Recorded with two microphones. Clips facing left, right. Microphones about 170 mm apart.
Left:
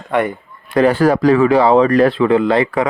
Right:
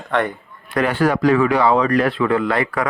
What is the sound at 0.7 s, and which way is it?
Speech, 35° left (ahead or behind).